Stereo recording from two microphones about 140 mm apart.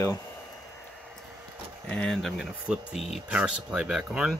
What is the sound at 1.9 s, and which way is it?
Speech, 5° left (ahead or behind).